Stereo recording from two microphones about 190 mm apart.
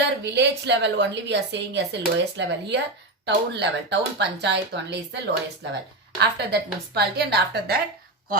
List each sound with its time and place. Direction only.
0.3 s speech: 65° right (ahead or behind)